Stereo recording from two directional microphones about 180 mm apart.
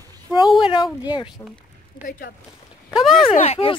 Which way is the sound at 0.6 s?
25° left (ahead or behind).